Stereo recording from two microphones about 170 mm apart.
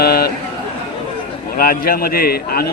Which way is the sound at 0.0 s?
65° left (ahead or behind).